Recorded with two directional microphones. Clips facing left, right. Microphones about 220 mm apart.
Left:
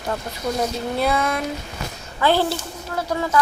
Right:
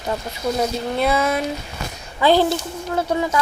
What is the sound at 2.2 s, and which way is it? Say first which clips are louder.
A woman's voice: right 3 dB; 15° right (ahead or behind).